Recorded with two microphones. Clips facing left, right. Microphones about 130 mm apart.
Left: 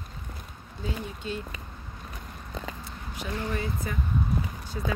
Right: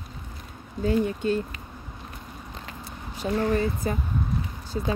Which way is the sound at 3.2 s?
35° right (ahead or behind).